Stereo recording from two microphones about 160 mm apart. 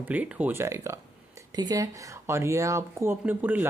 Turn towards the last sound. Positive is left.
turn(degrees=-10)  # may be behind; listen again after turning